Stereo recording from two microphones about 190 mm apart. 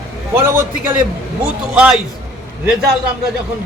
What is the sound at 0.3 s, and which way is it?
A man's voice, 10° right (ahead or behind).